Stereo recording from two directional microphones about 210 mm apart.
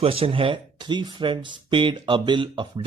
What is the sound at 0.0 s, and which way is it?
Speech, 25° right (ahead or behind).